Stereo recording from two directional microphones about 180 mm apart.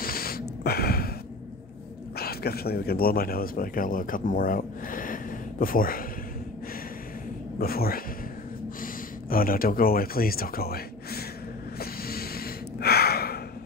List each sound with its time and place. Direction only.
0.0 s a sound: 55° left (ahead or behind)
2.1 s a man's voice: 60° left (ahead or behind)
7.5 s speech: 55° left (ahead or behind)
11.8 s gasp: 55° left (ahead or behind)